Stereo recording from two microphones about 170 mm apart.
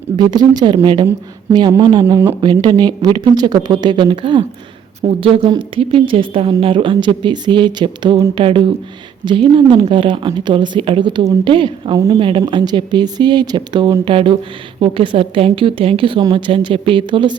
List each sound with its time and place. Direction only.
0.2 s a woman's voice: 25° right (ahead or behind)